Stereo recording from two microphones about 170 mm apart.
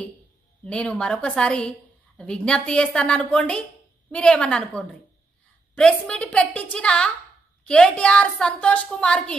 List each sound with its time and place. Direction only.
0.7 s a woman's voice: 5° left (ahead or behind)